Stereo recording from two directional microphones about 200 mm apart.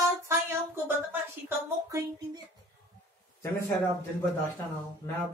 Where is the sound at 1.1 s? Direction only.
15° right (ahead or behind).